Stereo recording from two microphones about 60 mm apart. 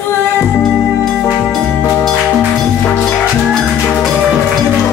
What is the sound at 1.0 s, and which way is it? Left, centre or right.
Music, centre.